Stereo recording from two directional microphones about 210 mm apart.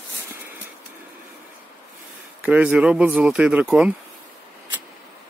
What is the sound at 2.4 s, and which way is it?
Speech, 5° right (ahead or behind).